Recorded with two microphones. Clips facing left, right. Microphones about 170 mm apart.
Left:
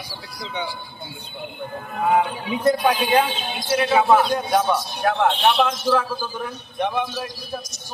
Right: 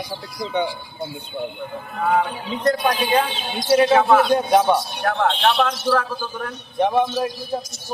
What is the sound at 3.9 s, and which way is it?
Speech, 10° left (ahead or behind).